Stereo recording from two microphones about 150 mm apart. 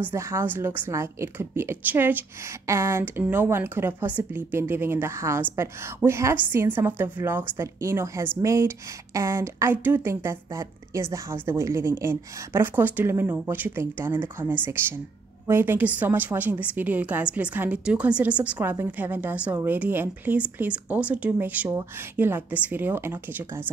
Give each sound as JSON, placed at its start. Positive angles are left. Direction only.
{"t": 0.0, "sound": "a woman's voice", "side_deg": -20}